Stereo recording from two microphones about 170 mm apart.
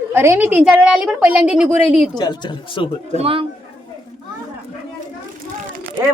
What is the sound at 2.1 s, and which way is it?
Speech, 25° left (ahead or behind).